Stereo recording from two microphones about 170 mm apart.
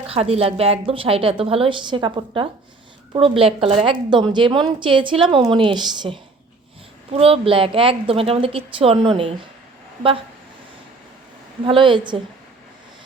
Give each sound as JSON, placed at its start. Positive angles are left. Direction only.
{"t": 0.1, "sound": "a woman's voice", "side_deg": -35}
{"t": 11.6, "sound": "a woman's voice", "side_deg": -30}